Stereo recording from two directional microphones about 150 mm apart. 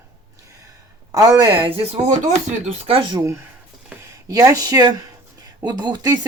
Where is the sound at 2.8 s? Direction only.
35° right (ahead or behind).